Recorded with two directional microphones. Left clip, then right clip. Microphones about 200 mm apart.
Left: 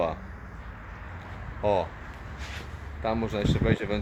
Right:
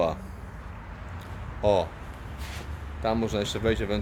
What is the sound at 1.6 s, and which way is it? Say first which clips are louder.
Speech: right 2 dB; 10° right (ahead or behind).